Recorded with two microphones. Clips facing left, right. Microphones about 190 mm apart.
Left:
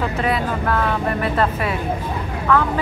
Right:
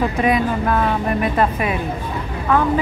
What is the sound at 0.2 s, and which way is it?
Speech, 15° right (ahead or behind).